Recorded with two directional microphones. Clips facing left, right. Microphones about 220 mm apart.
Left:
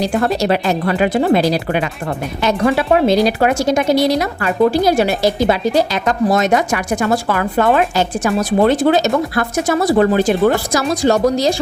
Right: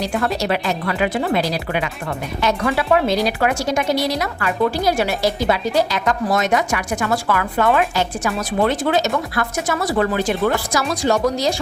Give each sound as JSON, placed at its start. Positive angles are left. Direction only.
{"t": 0.1, "sound": "speech", "side_deg": 35}